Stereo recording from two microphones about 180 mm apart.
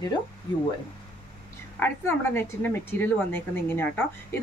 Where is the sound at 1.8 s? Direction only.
10° left (ahead or behind).